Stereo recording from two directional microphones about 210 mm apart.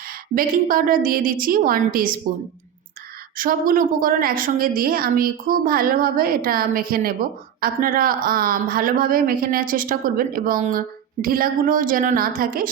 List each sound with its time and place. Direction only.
0.1 s a woman's voice: 40° right (ahead or behind)
3.3 s a woman's voice: 40° right (ahead or behind)